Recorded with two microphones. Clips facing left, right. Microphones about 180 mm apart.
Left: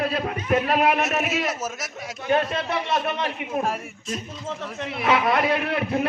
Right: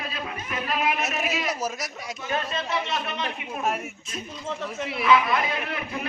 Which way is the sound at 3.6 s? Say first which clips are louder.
Right 1 dB; centre (ahead or behind).